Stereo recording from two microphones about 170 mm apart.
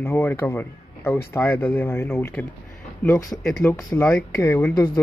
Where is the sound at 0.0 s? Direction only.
10° left (ahead or behind).